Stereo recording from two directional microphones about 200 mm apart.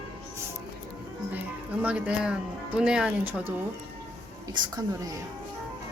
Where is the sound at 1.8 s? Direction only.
5° right (ahead or behind).